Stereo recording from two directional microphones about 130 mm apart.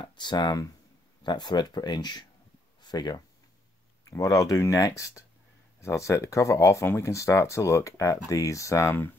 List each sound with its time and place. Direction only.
0.0 s speech: 35° left (ahead or behind); by 9.1 s 20° left (ahead or behind)